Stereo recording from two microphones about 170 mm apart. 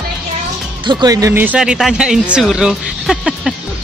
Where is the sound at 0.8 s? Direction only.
25° right (ahead or behind); by 3.5 s centre (ahead or behind).